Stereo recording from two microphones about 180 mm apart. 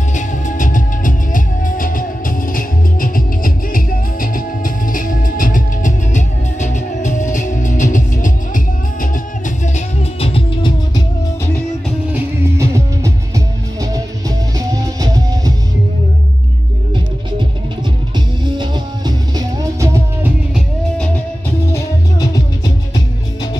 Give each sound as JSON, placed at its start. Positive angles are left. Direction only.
{"t": 0.1, "sound": "music", "side_deg": 45}
{"t": 9.8, "sound": "music", "side_deg": 30}
{"t": 12.1, "sound": "music", "side_deg": -15}
{"t": 14.7, "sound": "music", "side_deg": -20}
{"t": 18.1, "sound": "music", "side_deg": -25}
{"t": 20.5, "sound": "music", "side_deg": 5}
{"t": 21.7, "sound": "music", "side_deg": 20}